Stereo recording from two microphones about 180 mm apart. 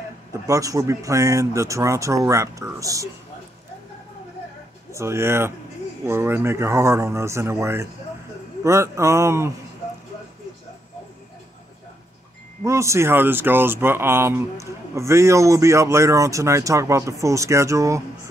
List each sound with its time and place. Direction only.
0.5 s speech: 20° right (ahead or behind)
4.9 s speech: 15° right (ahead or behind)
12.6 s speech: 15° right (ahead or behind)